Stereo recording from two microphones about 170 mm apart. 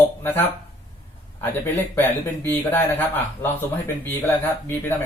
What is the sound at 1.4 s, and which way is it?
Speech, 15° left (ahead or behind).